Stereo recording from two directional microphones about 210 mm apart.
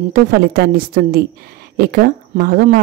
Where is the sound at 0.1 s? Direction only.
45° right (ahead or behind).